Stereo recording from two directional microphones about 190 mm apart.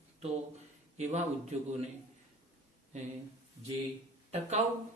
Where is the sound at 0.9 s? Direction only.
35° right (ahead or behind).